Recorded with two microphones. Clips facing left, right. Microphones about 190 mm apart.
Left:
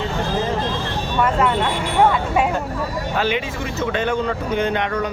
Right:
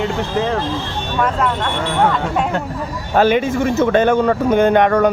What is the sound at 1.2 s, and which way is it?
Speech, 10° left (ahead or behind).